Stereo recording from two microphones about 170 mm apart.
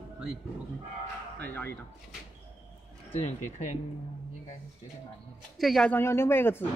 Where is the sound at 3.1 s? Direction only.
40° left (ahead or behind).